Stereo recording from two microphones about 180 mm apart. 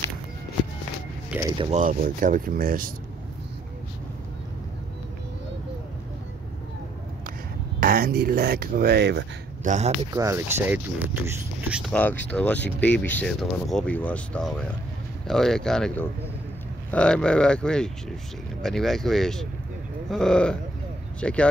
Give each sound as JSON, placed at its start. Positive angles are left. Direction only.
{"t": 1.6, "sound": "speech", "side_deg": -40}
{"t": 7.8, "sound": "speech", "side_deg": -55}
{"t": 9.6, "sound": "speech", "side_deg": -40}
{"t": 10.1, "sound": "speech", "side_deg": -15}
{"t": 11.9, "sound": "speech", "side_deg": 10}